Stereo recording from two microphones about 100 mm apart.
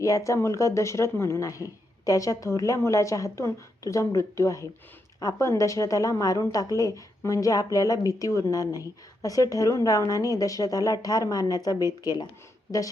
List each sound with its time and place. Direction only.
0.0 s a woman's voice: 35° left (ahead or behind)